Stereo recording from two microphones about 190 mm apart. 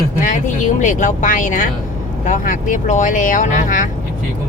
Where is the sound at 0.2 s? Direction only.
40° left (ahead or behind).